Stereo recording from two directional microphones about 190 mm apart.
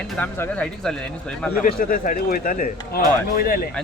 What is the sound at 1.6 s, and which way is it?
Speech, 45° left (ahead or behind).